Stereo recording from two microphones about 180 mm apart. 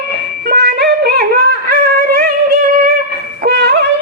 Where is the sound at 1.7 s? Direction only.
50° right (ahead or behind).